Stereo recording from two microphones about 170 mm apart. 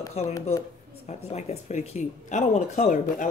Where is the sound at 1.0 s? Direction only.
40° left (ahead or behind).